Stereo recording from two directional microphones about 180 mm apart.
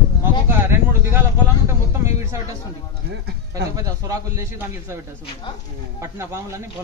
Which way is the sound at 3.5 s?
20° right (ahead or behind).